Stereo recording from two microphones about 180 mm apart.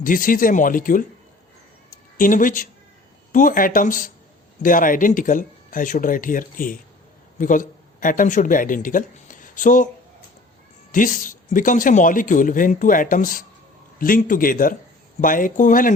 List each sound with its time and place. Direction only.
0.0 s speech: 50° left (ahead or behind)
2.1 s speech: 50° left (ahead or behind)
10.9 s speech: 50° left (ahead or behind)